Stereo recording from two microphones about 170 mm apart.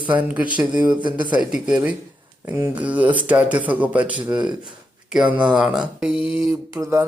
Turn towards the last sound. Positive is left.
turn(degrees=-15)  # may be behind; listen again after turning